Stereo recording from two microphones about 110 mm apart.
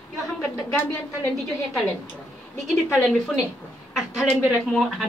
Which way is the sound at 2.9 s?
Centre (ahead or behind).